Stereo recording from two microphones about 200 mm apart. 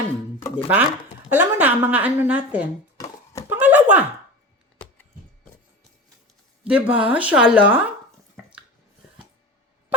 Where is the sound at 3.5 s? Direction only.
10° right (ahead or behind).